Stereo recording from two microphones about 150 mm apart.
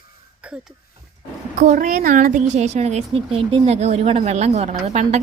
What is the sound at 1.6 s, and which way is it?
A woman's voice, 60° right (ahead or behind).